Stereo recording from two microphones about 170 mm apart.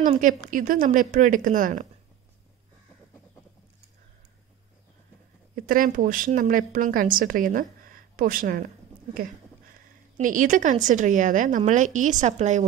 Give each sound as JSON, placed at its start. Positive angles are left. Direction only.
{"t": 0.0, "sound": "a woman's voice", "side_deg": -50}
{"t": 5.6, "sound": "a woman's voice", "side_deg": -55}